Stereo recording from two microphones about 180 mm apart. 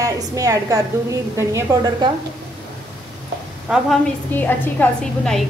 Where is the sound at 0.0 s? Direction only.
20° right (ahead or behind).